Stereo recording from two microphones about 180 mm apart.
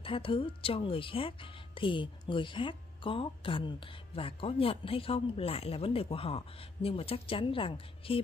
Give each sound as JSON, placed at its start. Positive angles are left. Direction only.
{"t": 0.0, "sound": "speech", "side_deg": 30}